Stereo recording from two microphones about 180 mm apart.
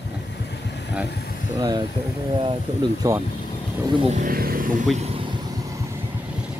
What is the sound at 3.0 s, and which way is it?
Speech, 20° right (ahead or behind).